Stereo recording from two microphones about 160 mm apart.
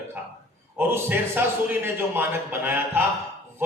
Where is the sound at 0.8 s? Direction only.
10° right (ahead or behind).